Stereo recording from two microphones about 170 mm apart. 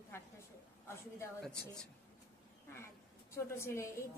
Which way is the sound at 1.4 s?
5° left (ahead or behind).